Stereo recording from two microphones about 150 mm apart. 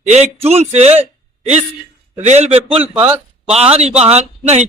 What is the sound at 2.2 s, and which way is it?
A man's voice, 45° right (ahead or behind).